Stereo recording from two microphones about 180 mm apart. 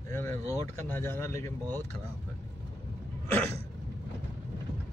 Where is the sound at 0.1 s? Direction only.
15° left (ahead or behind).